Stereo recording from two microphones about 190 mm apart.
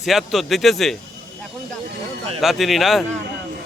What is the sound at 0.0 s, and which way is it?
Speech, centre (ahead or behind).